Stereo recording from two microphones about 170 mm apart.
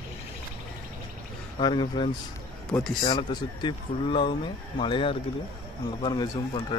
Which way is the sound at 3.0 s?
25° left (ahead or behind).